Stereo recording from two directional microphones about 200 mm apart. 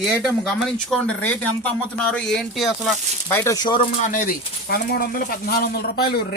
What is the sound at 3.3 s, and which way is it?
Speech, 15° left (ahead or behind).